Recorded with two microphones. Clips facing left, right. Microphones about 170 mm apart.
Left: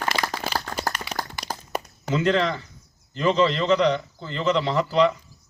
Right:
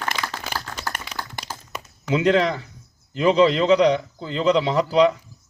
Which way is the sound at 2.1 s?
10° right (ahead or behind).